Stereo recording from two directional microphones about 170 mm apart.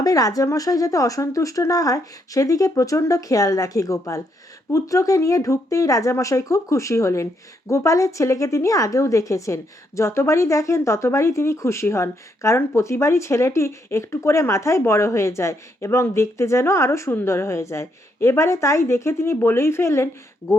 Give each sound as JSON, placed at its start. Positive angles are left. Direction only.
{"t": 0.0, "sound": "a woman's voice", "side_deg": 20}